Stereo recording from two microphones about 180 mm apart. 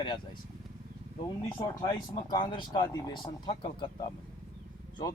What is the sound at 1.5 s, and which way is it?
Speech, 25° left (ahead or behind).